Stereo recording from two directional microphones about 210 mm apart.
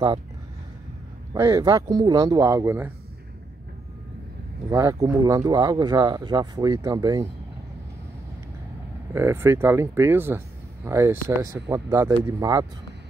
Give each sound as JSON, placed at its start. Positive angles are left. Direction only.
{"t": 1.3, "sound": "speech", "side_deg": -15}
{"t": 4.6, "sound": "speech", "side_deg": -15}
{"t": 9.1, "sound": "speech", "side_deg": -10}